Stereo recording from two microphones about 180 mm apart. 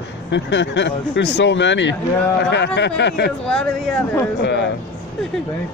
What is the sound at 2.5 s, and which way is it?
Speech, 70° left (ahead or behind).